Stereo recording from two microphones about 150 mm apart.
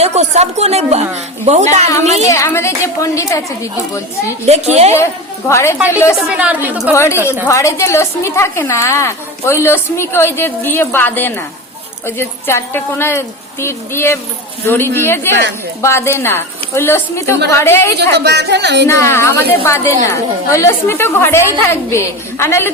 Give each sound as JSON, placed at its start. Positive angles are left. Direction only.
{"t": 0.0, "sound": "a woman's voice", "side_deg": -45}
{"t": 2.2, "sound": "a woman's voice", "side_deg": 20}
{"t": 4.4, "sound": "a woman's voice", "side_deg": -45}
{"t": 5.5, "sound": "a woman's voice", "side_deg": 20}
{"t": 6.1, "sound": "a woman's voice", "side_deg": -10}
{"t": 6.9, "sound": "a woman's voice", "side_deg": 15}
{"t": 18.1, "sound": "a woman's voice", "side_deg": -90}
{"t": 18.9, "sound": "a woman's voice", "side_deg": 20}